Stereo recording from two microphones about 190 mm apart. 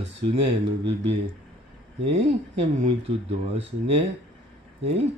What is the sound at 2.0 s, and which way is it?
Speech, 30° right (ahead or behind).